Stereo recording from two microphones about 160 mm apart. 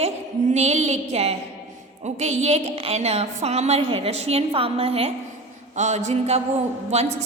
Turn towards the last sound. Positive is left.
turn(degrees=-45)  # may be behind; listen again after turning